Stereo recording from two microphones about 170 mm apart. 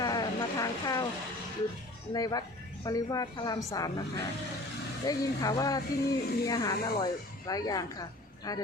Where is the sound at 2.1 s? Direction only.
20° left (ahead or behind).